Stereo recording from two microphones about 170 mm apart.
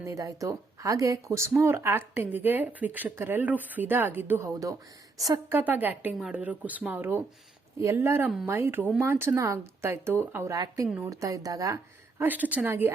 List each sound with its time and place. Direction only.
0.0 s a woman's voice: 20° right (ahead or behind)
12.2 s speech: 10° right (ahead or behind)